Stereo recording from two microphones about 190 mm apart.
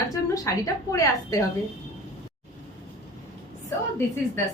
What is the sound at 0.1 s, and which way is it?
A woman's voice, 20° left (ahead or behind).